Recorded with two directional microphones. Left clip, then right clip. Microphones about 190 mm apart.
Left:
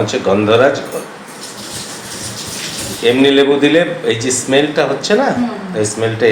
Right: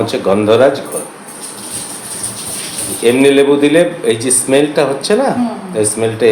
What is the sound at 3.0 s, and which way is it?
A man's voice, 35° right (ahead or behind).